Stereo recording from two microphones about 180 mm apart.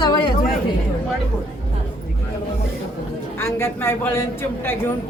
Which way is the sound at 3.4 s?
15° left (ahead or behind).